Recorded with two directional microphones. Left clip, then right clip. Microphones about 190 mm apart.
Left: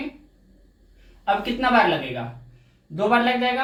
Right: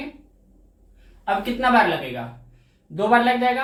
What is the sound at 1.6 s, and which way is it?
Speech, 20° left (ahead or behind).